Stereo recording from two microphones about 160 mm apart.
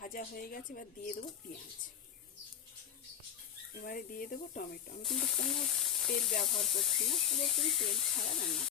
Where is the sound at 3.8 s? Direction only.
65° left (ahead or behind).